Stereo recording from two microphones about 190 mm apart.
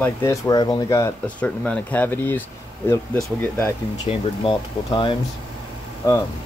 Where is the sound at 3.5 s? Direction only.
10° left (ahead or behind).